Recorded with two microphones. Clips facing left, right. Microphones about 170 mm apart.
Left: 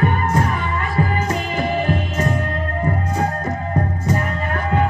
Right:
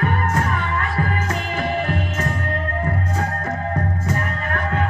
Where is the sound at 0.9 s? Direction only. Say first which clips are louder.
Left 3 dB; 15° left (ahead or behind).